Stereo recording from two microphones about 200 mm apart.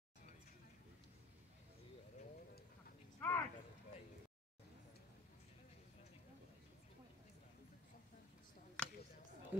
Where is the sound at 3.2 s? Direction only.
10° left (ahead or behind).